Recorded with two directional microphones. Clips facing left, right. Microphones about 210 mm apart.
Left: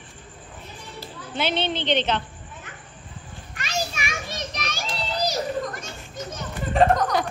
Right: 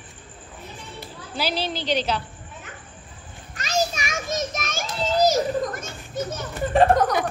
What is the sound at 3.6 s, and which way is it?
Children playing, 40° right (ahead or behind).